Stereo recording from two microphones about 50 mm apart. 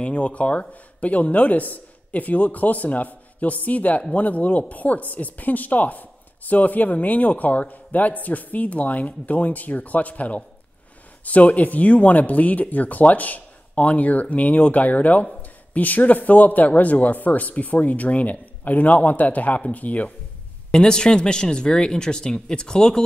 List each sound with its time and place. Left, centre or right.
0.0 s speech: left
20.7 s speech: centre